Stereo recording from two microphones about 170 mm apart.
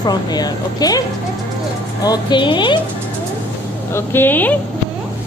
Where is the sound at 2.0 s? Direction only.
25° left (ahead or behind).